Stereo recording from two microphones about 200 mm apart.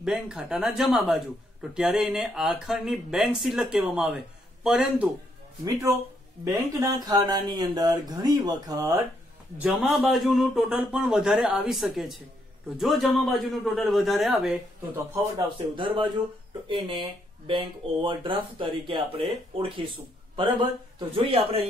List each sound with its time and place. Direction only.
0.0 s speech: centre (ahead or behind)
6.4 s speech: 20° right (ahead or behind)
9.6 s speech: 5° right (ahead or behind)
15.3 s speech: 25° right (ahead or behind)
20.3 s speech: 25° right (ahead or behind)